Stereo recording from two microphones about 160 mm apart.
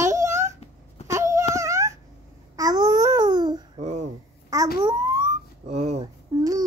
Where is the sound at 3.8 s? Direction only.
45° right (ahead or behind).